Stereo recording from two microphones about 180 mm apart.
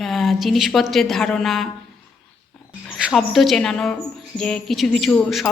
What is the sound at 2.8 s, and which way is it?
A woman's voice, centre (ahead or behind).